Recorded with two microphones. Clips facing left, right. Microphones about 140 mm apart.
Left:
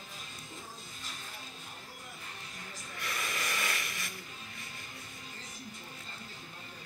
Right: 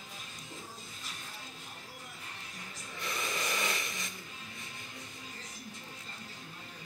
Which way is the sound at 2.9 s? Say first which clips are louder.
Right 2 dB; 20° right (ahead or behind).